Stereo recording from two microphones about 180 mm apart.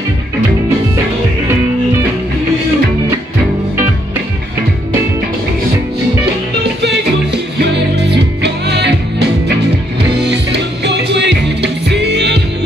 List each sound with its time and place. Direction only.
6.8 s music: 70° right (ahead or behind)